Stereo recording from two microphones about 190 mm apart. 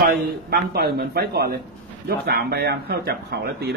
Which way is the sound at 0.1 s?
55° right (ahead or behind).